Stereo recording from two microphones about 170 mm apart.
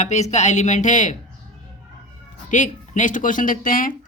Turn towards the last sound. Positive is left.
turn(degrees=50)  # may be behind; listen again after turning